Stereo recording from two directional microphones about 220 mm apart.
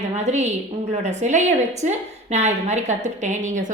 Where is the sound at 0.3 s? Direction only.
30° right (ahead or behind).